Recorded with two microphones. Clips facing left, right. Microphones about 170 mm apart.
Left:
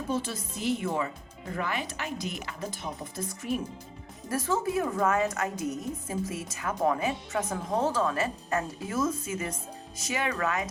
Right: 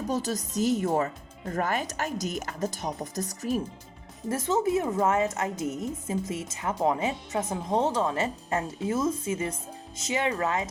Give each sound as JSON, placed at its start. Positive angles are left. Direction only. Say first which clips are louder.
{"t": 0.1, "sound": "speech", "louder": "right 2 dB", "side_deg": -40}
{"t": 4.3, "sound": "a woman's voice", "louder": "right 3 dB", "side_deg": -20}